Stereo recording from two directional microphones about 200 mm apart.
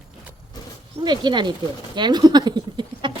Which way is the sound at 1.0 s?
20° right (ahead or behind).